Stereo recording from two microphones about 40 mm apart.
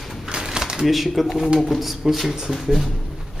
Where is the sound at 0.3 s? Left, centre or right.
Centre.